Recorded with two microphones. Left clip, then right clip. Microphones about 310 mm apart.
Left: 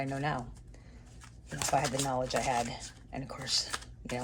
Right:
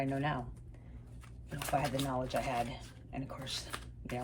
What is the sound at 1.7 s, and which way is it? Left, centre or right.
Speech, left.